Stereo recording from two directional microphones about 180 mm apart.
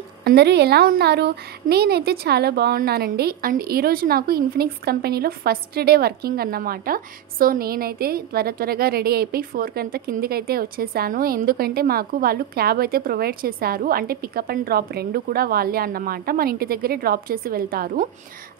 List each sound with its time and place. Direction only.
0.2 s speech: 65° right (ahead or behind)